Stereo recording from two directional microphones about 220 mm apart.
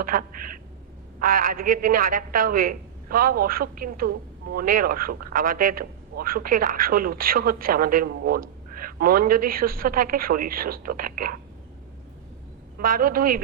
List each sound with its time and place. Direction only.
0.0 s a woman's voice: 40° right (ahead or behind)
12.8 s a woman's voice: 40° right (ahead or behind)